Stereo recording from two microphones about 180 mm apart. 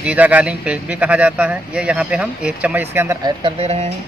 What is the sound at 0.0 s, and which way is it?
Speech, 10° right (ahead or behind).